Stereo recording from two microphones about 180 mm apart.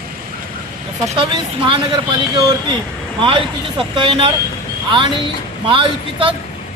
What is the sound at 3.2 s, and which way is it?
Speech, 30° right (ahead or behind).